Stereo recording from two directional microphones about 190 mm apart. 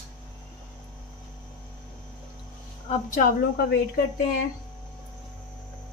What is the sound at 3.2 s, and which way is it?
Speech, 55° left (ahead or behind).